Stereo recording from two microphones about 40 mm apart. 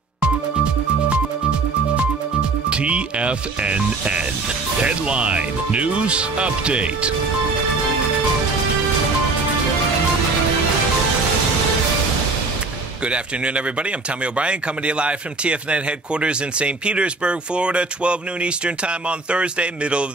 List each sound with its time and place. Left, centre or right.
2.7 s speech: right
13.0 s speech: right